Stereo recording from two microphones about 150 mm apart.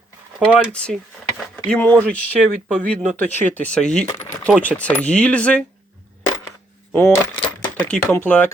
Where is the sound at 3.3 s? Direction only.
10° left (ahead or behind).